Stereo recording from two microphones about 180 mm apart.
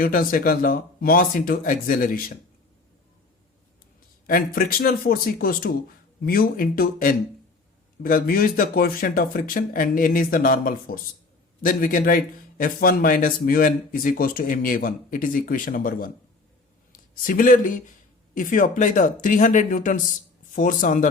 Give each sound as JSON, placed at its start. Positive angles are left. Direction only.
{"t": 0.0, "sound": "a man's voice", "side_deg": 55}
{"t": 4.3, "sound": "a man's voice", "side_deg": 55}